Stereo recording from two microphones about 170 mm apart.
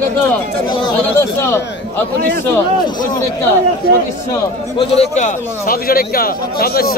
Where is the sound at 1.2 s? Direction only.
15° left (ahead or behind).